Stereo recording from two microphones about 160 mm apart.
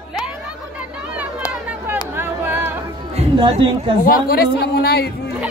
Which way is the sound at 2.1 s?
15° right (ahead or behind).